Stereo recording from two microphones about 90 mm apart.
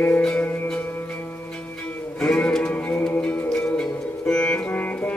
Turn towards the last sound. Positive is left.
turn(degrees=20)  # may be behind; listen again after turning